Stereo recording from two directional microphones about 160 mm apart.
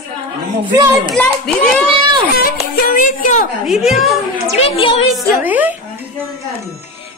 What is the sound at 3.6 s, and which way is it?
Speech, centre (ahead or behind).